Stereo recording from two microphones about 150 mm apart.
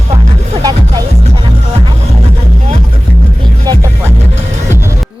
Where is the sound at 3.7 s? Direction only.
25° right (ahead or behind).